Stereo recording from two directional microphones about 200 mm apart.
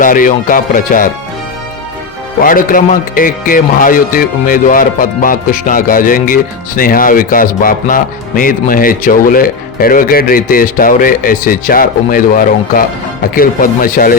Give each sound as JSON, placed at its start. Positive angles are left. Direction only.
{"t": 0.0, "sound": "a man's voice", "side_deg": 45}
{"t": 2.4, "sound": "a man's voice", "side_deg": 45}